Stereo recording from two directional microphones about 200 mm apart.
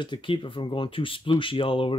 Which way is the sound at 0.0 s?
25° left (ahead or behind).